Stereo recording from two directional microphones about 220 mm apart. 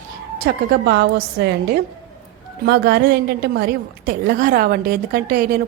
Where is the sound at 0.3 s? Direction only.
45° right (ahead or behind).